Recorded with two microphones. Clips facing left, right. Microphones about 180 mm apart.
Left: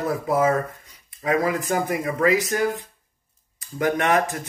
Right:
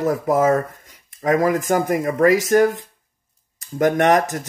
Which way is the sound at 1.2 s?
45° right (ahead or behind).